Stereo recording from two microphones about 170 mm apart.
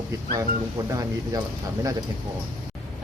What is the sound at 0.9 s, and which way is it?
Speech, 20° right (ahead or behind).